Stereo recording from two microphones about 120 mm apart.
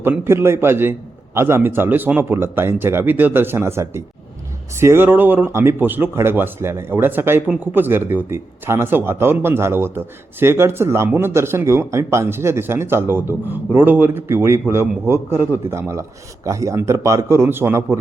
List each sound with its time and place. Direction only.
0.0 s a man's voice: 20° right (ahead or behind)